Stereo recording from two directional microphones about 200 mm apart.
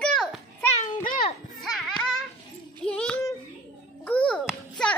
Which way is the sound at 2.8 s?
5° left (ahead or behind).